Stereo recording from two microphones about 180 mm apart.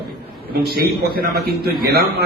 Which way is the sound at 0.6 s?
60° right (ahead or behind).